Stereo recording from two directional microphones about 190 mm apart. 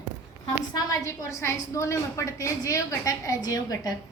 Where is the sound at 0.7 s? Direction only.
20° left (ahead or behind).